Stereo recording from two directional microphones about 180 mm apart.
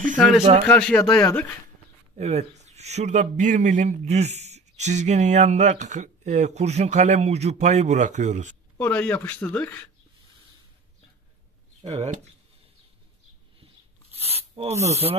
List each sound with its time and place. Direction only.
0.1 s speech: centre (ahead or behind); by 1.4 s 15° left (ahead or behind)
2.1 s a man's voice: 35° right (ahead or behind)
8.7 s speech: 10° left (ahead or behind)
14.1 s a sound: 35° right (ahead or behind)
14.5 s a man's voice: 35° right (ahead or behind)